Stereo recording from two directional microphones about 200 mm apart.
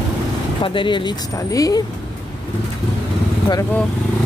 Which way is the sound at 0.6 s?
25° left (ahead or behind).